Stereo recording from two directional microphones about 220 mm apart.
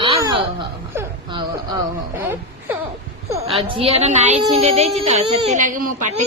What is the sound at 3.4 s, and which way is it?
A woman's voice, 25° right (ahead or behind).